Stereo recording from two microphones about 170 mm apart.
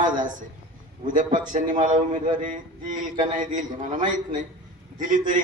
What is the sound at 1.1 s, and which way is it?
Speech, 50° right (ahead or behind).